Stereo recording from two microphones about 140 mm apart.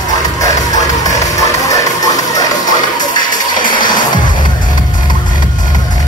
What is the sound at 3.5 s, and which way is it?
Music, 35° left (ahead or behind).